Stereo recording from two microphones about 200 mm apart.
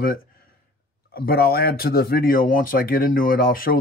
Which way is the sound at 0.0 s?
45° left (ahead or behind).